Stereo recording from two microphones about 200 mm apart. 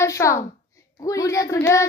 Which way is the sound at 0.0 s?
15° left (ahead or behind).